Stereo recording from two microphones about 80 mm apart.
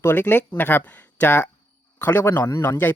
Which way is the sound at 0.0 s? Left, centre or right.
Left.